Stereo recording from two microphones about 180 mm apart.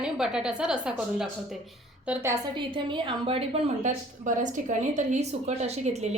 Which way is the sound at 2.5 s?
25° right (ahead or behind).